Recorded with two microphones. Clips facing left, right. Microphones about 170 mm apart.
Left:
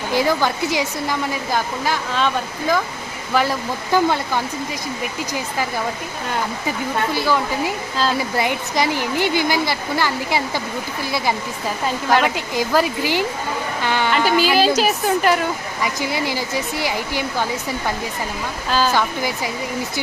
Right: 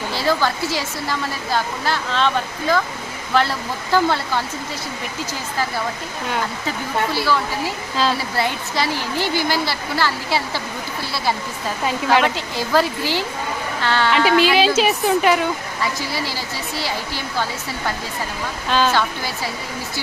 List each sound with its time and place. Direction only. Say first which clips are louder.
0.1 s speech: left 2 dB; 15° left (ahead or behind)
8.4 s speech: left 2 dB; 15° left (ahead or behind)
12.2 s speech: left 1 dB; 15° left (ahead or behind)
14.1 s a woman's voice: right 2 dB; centre (ahead or behind)
15.8 s speech: left 4 dB; 20° left (ahead or behind)
18.7 s a woman's voice: even; 5° left (ahead or behind)